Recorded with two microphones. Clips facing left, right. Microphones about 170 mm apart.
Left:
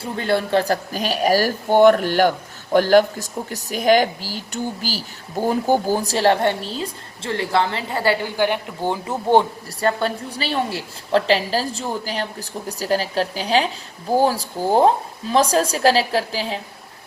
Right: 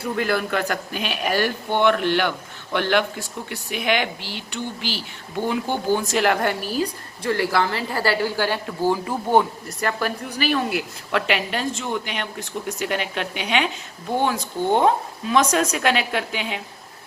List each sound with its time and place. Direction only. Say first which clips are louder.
0.0 s speech: left 2 dB; 30° left (ahead or behind)